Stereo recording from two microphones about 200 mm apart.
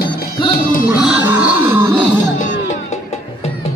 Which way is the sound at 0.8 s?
10° right (ahead or behind).